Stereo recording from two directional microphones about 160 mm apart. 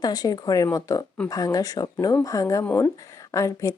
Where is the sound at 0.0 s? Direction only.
25° left (ahead or behind).